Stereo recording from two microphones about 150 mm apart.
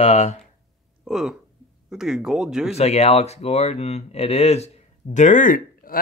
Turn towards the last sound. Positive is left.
turn(degrees=65)  # may be behind; listen again after turning